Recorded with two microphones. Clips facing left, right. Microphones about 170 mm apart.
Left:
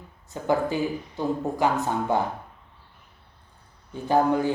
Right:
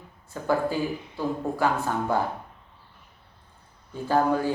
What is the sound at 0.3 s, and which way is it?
Speech, 20° left (ahead or behind).